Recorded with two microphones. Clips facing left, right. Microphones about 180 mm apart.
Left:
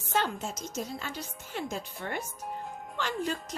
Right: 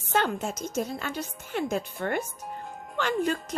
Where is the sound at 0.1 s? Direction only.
60° right (ahead or behind).